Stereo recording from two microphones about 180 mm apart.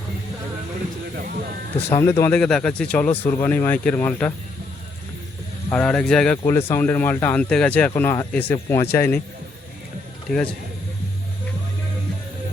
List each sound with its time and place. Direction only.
1.1 s a sound: 55° right (ahead or behind)
2.0 s speech: 15° left (ahead or behind)
2.4 s speech: 5° left (ahead or behind)
5.7 s speech: 5° left (ahead or behind)
10.2 s a man's voice: 5° left (ahead or behind)